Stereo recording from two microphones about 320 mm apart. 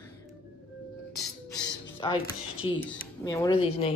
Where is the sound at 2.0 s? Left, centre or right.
Centre.